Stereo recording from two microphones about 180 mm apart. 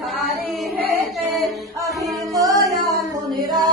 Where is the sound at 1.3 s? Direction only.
Centre (ahead or behind).